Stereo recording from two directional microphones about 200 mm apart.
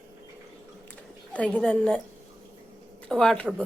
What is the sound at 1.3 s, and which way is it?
Speech, 5° left (ahead or behind).